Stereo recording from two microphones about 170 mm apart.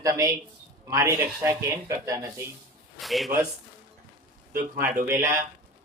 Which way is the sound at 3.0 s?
Centre (ahead or behind).